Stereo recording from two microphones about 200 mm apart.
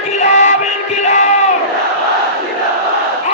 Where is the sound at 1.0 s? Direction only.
35° left (ahead or behind).